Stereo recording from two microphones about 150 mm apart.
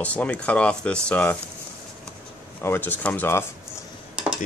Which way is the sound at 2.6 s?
15° left (ahead or behind).